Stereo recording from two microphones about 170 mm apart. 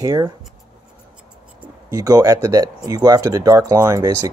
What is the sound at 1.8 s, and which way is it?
Speech, 20° right (ahead or behind).